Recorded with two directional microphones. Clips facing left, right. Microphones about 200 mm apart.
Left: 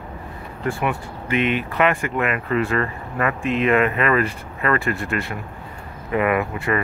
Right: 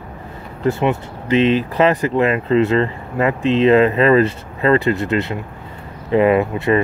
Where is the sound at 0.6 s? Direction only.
25° right (ahead or behind).